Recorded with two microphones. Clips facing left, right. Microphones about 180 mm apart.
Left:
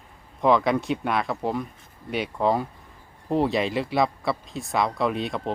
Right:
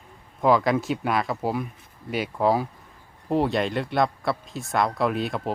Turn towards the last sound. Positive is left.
turn(degrees=0)  # may be behind; listen again after turning